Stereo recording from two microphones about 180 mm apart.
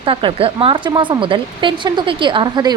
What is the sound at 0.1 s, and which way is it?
Speech, 30° right (ahead or behind).